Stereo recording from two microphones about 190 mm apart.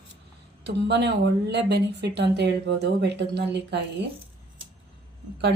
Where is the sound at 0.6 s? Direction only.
60° right (ahead or behind).